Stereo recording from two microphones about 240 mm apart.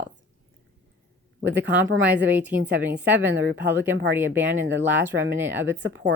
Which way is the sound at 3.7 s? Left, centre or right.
Centre.